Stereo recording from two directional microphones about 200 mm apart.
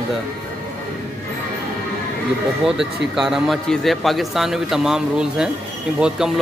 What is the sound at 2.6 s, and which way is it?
A man's voice, centre (ahead or behind).